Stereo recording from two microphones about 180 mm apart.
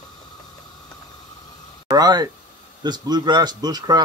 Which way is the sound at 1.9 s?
20° right (ahead or behind).